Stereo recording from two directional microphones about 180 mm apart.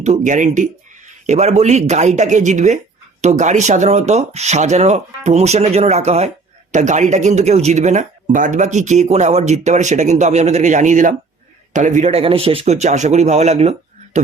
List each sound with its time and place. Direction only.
0.0 s speech: 40° right (ahead or behind)